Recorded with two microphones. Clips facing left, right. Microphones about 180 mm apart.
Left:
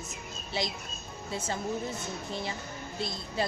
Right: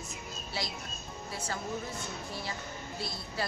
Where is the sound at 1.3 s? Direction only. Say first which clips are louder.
Left 4 dB; 20° left (ahead or behind).